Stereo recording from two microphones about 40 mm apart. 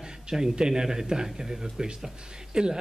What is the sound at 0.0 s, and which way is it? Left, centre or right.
A man's voice, centre.